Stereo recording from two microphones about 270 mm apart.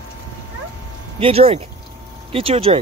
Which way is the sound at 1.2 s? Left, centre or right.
Right.